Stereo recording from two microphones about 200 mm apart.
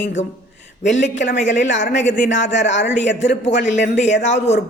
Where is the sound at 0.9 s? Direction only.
65° left (ahead or behind).